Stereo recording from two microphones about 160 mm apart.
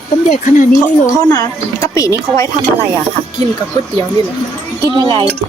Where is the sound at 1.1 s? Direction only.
20° left (ahead or behind).